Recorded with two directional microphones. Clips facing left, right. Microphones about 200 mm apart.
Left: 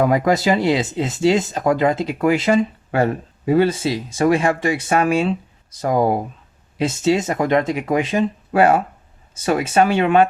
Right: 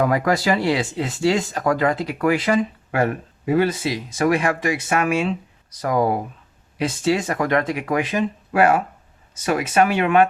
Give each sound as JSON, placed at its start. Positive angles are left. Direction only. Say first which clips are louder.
{"t": 0.0, "sound": "speech", "louder": "left 3 dB", "side_deg": 20}